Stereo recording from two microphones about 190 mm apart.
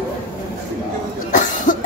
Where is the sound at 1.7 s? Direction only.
45° left (ahead or behind).